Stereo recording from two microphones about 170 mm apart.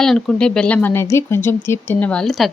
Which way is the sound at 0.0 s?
5° left (ahead or behind).